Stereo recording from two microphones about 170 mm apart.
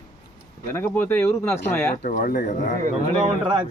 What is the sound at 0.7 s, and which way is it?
Speech, 10° left (ahead or behind).